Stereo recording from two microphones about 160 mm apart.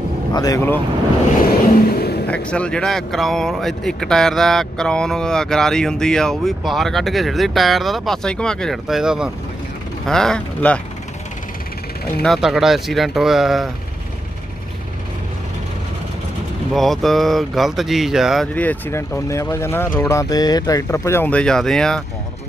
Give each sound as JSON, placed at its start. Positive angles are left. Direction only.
{"t": 0.3, "sound": "speech", "side_deg": 25}
{"t": 2.0, "sound": "a sound", "side_deg": 80}
{"t": 2.2, "sound": "speech", "side_deg": 10}
{"t": 12.2, "sound": "speech", "side_deg": 0}
{"t": 16.7, "sound": "speech", "side_deg": 0}
{"t": 18.5, "sound": "speech", "side_deg": 10}